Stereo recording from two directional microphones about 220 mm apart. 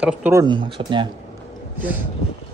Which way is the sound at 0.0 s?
10° right (ahead or behind).